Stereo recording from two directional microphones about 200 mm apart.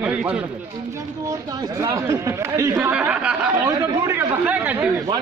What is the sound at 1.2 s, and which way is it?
Speech, 20° right (ahead or behind).